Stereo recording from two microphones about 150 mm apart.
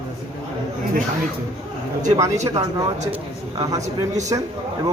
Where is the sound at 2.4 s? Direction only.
25° right (ahead or behind).